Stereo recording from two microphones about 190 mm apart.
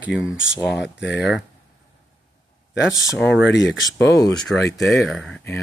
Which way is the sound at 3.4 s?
70° left (ahead or behind).